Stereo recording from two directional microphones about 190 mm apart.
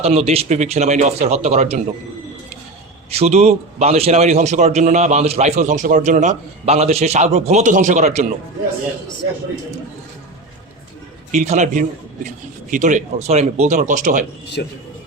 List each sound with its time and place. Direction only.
0.0 s a man's voice: 35° right (ahead or behind)
3.1 s a man's voice: 35° right (ahead or behind)
11.3 s a man's voice: 40° right (ahead or behind)
14.6 s a man's voice: 55° left (ahead or behind)